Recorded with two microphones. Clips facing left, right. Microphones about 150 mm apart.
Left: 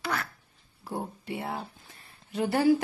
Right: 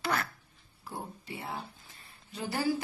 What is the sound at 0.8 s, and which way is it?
Speech, 45° left (ahead or behind).